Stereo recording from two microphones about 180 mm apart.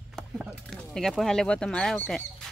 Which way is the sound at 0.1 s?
Centre (ahead or behind).